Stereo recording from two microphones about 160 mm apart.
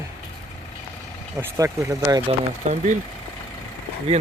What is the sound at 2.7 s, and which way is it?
Speech, 50° right (ahead or behind).